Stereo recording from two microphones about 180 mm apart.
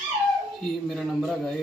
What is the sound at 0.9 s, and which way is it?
Speech, centre (ahead or behind).